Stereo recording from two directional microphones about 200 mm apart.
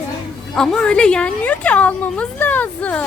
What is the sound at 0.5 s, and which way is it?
Speech, 5° left (ahead or behind).